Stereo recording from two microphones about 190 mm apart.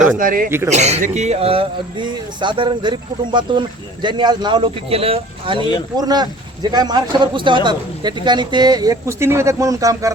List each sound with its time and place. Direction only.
0.2 s speech: 45° right (ahead or behind)
0.7 s a man's voice: 35° right (ahead or behind); by 10.1 s 15° right (ahead or behind)